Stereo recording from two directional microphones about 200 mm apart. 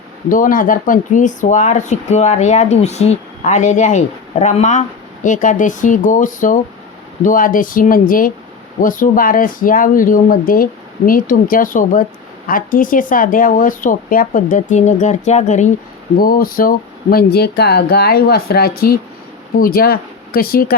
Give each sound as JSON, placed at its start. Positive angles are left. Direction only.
{"t": 0.3, "sound": "speech", "side_deg": 40}